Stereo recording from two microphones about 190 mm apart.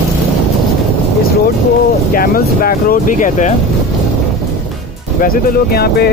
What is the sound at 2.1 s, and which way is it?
Speech, 50° left (ahead or behind).